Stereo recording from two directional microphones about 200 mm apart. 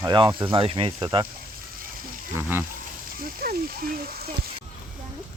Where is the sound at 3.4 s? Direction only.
50° right (ahead or behind).